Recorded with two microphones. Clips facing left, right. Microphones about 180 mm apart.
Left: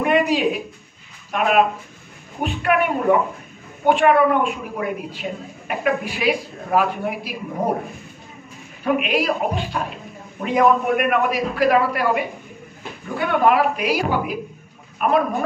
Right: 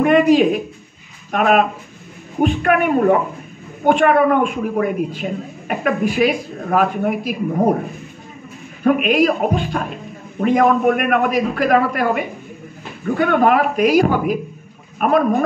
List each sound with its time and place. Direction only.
0.0 s a man's voice: 45° right (ahead or behind)
8.8 s a man's voice: 50° right (ahead or behind)